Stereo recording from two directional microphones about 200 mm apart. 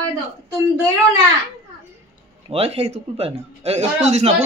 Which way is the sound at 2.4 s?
30° right (ahead or behind).